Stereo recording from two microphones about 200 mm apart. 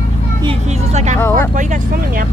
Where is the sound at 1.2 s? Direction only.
10° left (ahead or behind).